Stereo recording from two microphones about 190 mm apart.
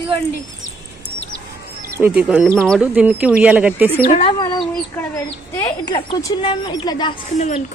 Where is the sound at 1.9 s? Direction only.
10° right (ahead or behind).